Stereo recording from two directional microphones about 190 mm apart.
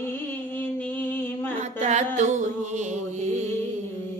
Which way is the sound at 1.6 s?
40° right (ahead or behind).